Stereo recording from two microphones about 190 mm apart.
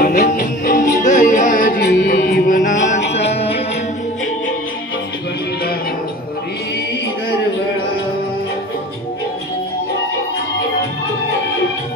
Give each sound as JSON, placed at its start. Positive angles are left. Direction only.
{"t": 0.0, "sound": "music", "side_deg": 45}
{"t": 1.9, "sound": "music", "side_deg": 65}